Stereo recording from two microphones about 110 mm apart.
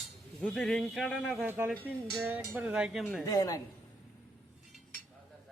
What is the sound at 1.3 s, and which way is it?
A man's voice, 20° right (ahead or behind).